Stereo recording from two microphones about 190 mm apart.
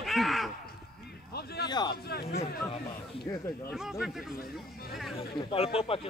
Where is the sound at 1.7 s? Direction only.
25° left (ahead or behind).